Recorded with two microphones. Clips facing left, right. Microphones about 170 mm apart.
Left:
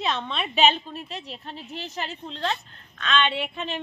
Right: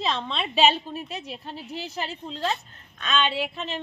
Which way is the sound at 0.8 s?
10° right (ahead or behind).